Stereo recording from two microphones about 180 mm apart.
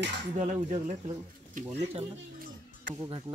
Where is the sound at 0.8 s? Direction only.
45° right (ahead or behind).